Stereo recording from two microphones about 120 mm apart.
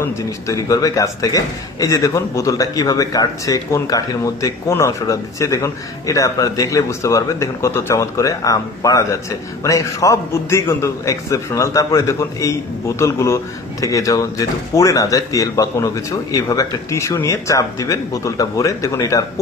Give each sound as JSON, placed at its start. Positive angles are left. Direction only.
{"t": 0.0, "sound": "a man's voice", "side_deg": 30}